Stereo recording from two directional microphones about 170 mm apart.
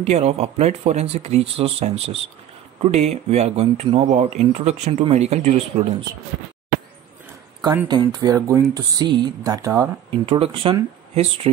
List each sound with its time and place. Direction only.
0.0 s speech: 40° right (ahead or behind)
7.9 s speech: 25° right (ahead or behind)
10.2 s speech: 35° right (ahead or behind)